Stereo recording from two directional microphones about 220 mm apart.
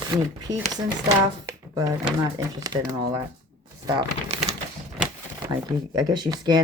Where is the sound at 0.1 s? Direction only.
15° right (ahead or behind).